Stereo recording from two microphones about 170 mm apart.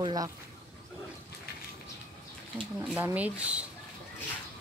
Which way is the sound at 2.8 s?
15° right (ahead or behind).